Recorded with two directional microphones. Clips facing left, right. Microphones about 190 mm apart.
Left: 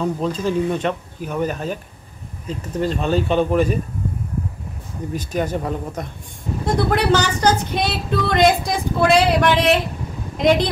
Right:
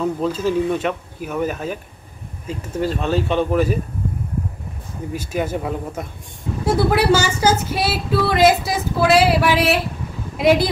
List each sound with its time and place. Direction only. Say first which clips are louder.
0.0 s speech: right 1 dB; 5° right (ahead or behind)
5.1 s speech: even; 10° right (ahead or behind)